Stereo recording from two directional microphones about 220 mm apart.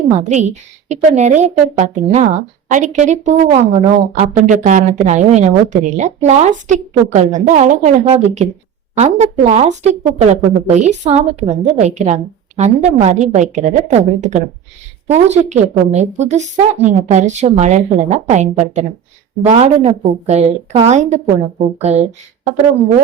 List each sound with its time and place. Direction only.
0.1 s a woman's voice: 30° right (ahead or behind)